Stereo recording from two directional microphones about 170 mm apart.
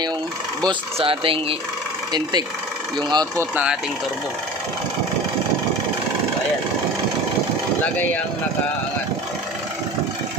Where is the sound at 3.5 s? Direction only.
5° right (ahead or behind).